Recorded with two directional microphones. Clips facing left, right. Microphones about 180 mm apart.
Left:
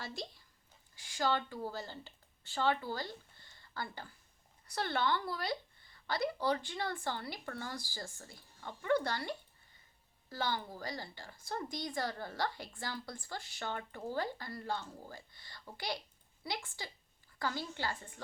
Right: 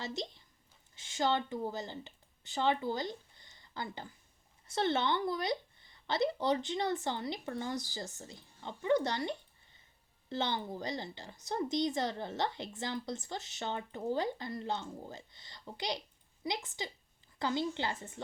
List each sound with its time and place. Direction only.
0.0 s a woman's voice: 20° right (ahead or behind)